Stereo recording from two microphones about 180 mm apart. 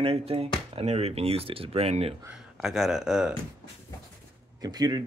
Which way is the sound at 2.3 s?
5° right (ahead or behind).